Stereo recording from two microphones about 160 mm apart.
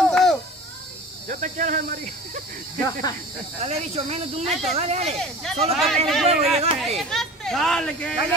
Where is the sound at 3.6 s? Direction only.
40° right (ahead or behind).